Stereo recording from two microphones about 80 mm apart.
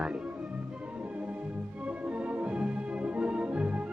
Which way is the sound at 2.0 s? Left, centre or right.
Centre.